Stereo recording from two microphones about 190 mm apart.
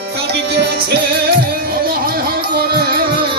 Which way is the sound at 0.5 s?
60° right (ahead or behind).